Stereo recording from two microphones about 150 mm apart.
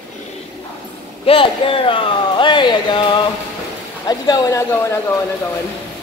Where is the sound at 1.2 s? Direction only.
35° left (ahead or behind); by 5.1 s 20° left (ahead or behind).